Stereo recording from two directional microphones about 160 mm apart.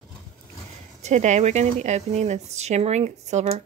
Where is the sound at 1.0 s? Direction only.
45° right (ahead or behind).